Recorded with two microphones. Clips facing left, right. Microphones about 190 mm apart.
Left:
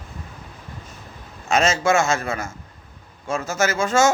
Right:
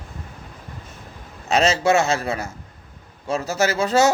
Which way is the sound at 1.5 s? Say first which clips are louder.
Right 1 dB; 35° right (ahead or behind).